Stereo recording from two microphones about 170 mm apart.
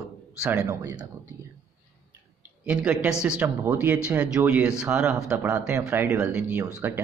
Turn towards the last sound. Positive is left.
turn(degrees=-10)  # may be behind; listen again after turning